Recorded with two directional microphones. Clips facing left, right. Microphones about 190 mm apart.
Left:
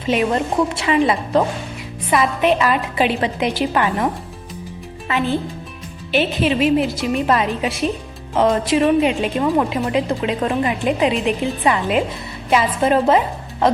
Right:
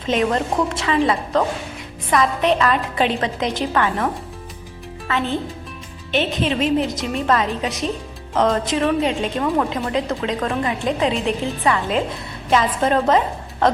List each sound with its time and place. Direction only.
0.0 s a woman's voice: 10° left (ahead or behind)